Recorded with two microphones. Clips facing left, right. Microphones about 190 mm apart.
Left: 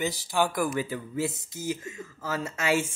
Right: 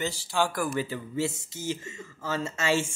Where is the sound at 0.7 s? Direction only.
5° right (ahead or behind).